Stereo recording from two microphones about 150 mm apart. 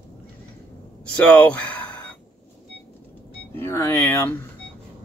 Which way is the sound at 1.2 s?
10° left (ahead or behind).